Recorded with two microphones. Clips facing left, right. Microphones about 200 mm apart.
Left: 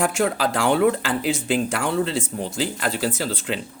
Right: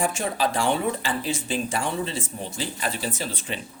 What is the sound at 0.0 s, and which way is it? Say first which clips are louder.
Speech: left 4 dB; 80° left.